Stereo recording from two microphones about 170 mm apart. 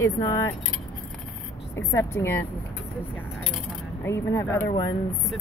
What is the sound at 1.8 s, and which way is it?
Speech, 15° left (ahead or behind).